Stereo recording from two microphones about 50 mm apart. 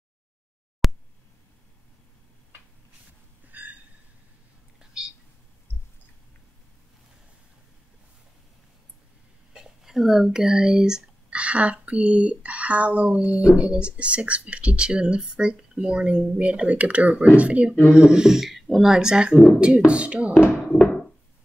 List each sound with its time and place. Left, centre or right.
0.8 s a sound: centre
4.7 s whispering: centre
9.5 s a sound: centre
11.3 s speech: right
17.9 s speech: centre
20.7 s knock: centre